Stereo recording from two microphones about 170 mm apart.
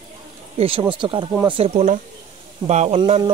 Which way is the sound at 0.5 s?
35° right (ahead or behind).